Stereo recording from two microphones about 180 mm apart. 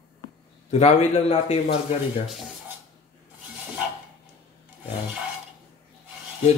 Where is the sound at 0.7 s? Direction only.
35° left (ahead or behind).